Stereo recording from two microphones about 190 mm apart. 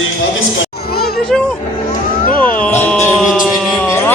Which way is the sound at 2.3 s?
10° left (ahead or behind).